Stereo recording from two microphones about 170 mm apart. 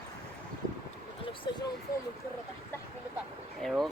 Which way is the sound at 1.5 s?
25° left (ahead or behind).